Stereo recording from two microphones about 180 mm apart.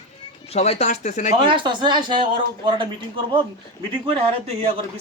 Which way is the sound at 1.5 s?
25° right (ahead or behind).